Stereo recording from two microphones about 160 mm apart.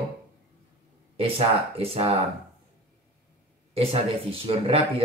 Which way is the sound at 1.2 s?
35° right (ahead or behind).